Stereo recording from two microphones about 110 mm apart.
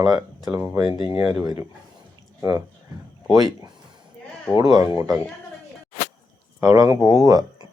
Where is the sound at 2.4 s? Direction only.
30° right (ahead or behind).